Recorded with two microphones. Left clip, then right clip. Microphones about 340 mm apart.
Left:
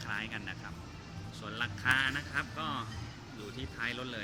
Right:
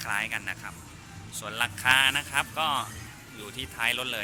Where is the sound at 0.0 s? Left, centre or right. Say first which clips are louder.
Right 9 dB; centre.